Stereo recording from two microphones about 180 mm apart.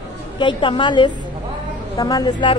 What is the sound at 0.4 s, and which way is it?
A woman's voice, 25° left (ahead or behind).